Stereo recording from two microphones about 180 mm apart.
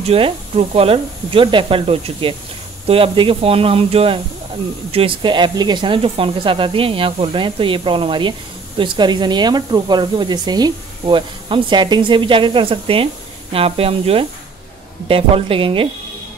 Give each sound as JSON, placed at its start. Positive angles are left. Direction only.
{"t": 0.0, "sound": "speech", "side_deg": -35}